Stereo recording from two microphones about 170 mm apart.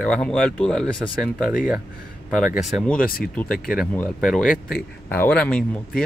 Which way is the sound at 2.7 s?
Centre (ahead or behind).